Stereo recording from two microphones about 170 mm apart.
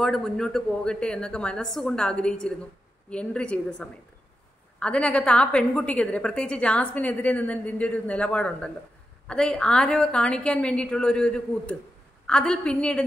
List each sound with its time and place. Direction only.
0.0 s a woman's voice: 5° left (ahead or behind)